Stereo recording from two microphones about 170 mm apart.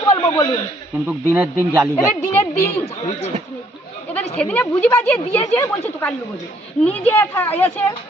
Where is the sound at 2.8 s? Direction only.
40° left (ahead or behind).